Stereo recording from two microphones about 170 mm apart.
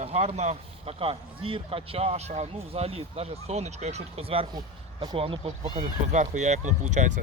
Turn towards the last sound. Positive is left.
turn(degrees=-45)  # may be behind; listen again after turning